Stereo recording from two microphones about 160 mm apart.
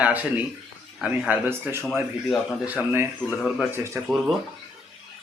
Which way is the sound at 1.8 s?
Centre (ahead or behind).